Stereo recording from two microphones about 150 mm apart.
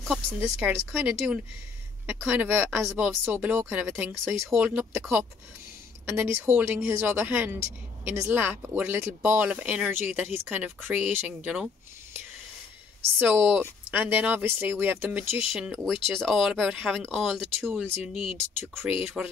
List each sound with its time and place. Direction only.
0.0 s speech: 5° left (ahead or behind)
0.4 s speech: 10° right (ahead or behind)
4.4 s speech: centre (ahead or behind)
6.0 s speech: 15° right (ahead or behind)
13.5 s speech: 10° right (ahead or behind)
15.5 s speech: centre (ahead or behind)
17.6 s speech: 15° right (ahead or behind)
18.0 s speech: centre (ahead or behind)